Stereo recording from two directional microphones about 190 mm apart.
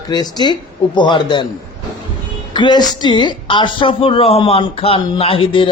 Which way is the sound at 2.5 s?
25° left (ahead or behind).